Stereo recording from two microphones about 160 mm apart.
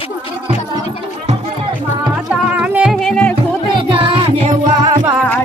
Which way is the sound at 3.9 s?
35° right (ahead or behind).